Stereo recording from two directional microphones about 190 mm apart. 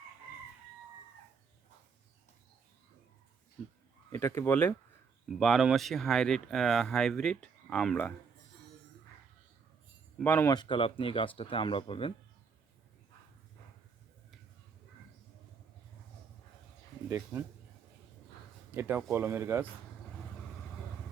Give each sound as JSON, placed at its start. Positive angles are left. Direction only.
{"t": 4.1, "sound": "speech", "side_deg": 15}
{"t": 10.2, "sound": "speech", "side_deg": 10}
{"t": 17.1, "sound": "speech", "side_deg": -15}
{"t": 18.7, "sound": "speech", "side_deg": -10}